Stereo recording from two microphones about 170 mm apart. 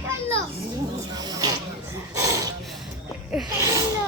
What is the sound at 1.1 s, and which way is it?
Speech, 20° right (ahead or behind).